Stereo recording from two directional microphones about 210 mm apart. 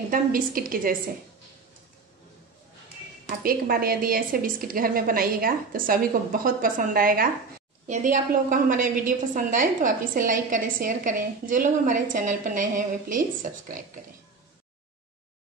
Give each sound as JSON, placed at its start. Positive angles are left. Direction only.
{"t": 0.1, "sound": "a woman's voice", "side_deg": -40}
{"t": 3.3, "sound": "a woman's voice", "side_deg": -45}